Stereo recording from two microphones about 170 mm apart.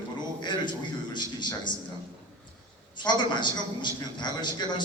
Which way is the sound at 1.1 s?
25° left (ahead or behind).